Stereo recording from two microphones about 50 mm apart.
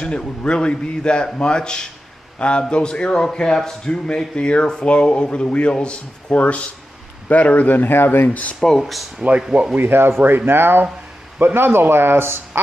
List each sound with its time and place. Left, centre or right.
0.0 s a man's voice: left
8.3 s speech: left
8.5 s a man's voice: centre
9.8 s speech: right